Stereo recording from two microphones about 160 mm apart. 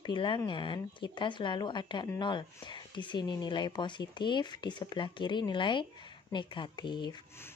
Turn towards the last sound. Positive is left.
turn(degrees=30)  # may be behind; listen again after turning